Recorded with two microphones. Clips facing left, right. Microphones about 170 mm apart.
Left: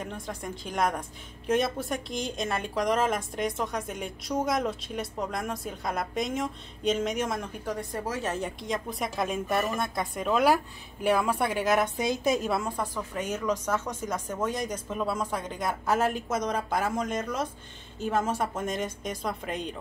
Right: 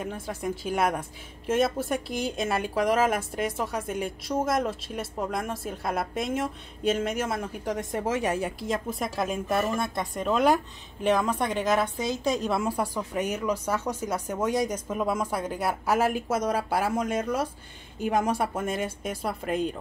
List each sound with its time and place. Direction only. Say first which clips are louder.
0.0 s speech: right 4 dB; 5° right (ahead or behind)
7.6 s a woman's voice: right 6 dB; 20° right (ahead or behind)
8.3 s speech: right 3 dB; 5° right (ahead or behind)
12.6 s speech: right 4 dB; 10° right (ahead or behind)